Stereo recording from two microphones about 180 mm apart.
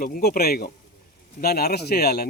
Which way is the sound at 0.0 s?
55° left (ahead or behind).